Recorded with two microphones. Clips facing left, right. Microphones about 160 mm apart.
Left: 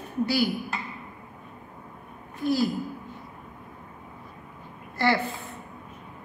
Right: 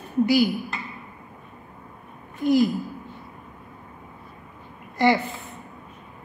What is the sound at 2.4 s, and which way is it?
Speech, 20° right (ahead or behind).